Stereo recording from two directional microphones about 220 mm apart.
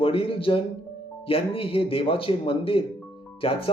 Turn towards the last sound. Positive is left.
turn(degrees=25)  # may be behind; listen again after turning